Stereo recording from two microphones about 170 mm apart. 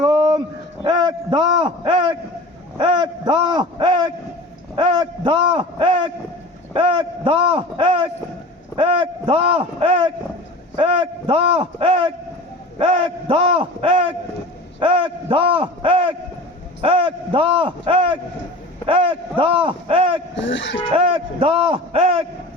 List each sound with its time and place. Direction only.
0.0 s a sound: 25° right (ahead or behind)
0.9 s a man's voice: 25° right (ahead or behind)
20.3 s speech: 90° left
20.9 s speech: 30° right (ahead or behind)